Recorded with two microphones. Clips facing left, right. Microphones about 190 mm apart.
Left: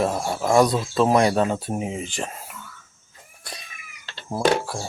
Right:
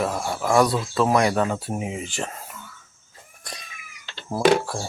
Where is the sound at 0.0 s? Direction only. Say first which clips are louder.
Left 2 dB; 25° left (ahead or behind).